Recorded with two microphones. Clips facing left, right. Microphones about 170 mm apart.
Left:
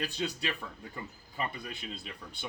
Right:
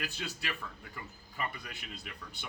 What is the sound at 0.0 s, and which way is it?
Speech, 25° left (ahead or behind).